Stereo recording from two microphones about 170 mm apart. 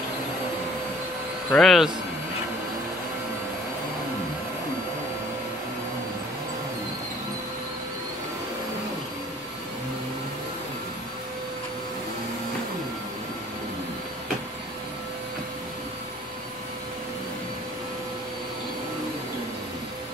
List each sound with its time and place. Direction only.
1.5 s speech: centre (ahead or behind)